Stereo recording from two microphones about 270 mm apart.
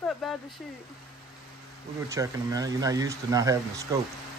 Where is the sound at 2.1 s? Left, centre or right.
Centre.